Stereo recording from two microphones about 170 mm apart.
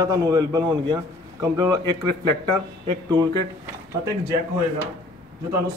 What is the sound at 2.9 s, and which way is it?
Speech, 25° right (ahead or behind).